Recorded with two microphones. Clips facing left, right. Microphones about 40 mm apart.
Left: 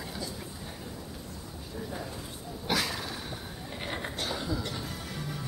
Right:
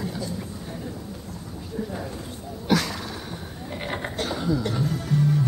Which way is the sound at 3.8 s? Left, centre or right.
Right.